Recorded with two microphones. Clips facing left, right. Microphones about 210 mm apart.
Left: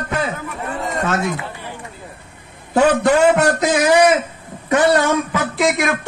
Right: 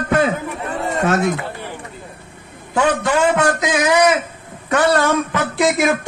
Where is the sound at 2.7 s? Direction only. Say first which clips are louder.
Left 4 dB; 40° left (ahead or behind).